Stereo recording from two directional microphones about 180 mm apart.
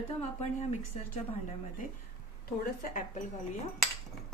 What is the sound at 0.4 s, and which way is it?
Speech, 40° left (ahead or behind).